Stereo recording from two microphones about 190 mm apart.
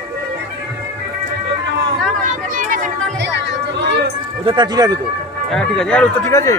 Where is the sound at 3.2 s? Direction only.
70° right (ahead or behind).